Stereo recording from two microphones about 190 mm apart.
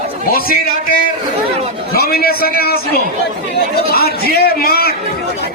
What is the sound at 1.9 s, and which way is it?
A man's voice, 55° left (ahead or behind).